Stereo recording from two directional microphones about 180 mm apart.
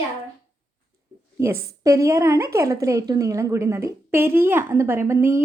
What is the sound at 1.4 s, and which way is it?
A woman's voice, 15° right (ahead or behind).